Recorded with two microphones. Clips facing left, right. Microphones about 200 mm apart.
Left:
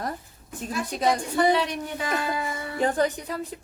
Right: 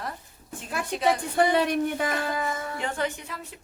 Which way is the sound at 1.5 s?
55° right (ahead or behind).